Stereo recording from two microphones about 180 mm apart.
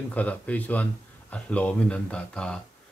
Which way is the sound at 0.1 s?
10° left (ahead or behind).